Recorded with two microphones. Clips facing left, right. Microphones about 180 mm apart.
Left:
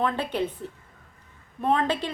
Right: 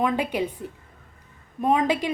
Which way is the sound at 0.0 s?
10° right (ahead or behind).